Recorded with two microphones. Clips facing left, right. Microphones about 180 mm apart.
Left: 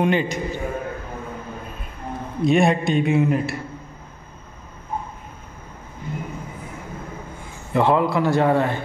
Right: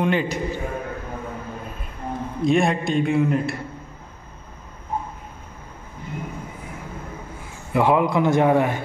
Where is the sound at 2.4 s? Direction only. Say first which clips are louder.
Left 2 dB; centre (ahead or behind).